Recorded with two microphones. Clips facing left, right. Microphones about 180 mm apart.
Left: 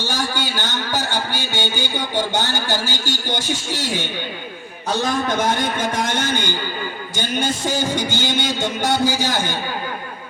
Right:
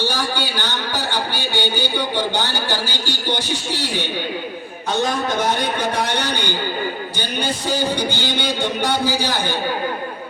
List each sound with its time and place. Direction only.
0.1 s a man's voice: 45° left (ahead or behind)
5.5 s a man's voice: 45° left (ahead or behind)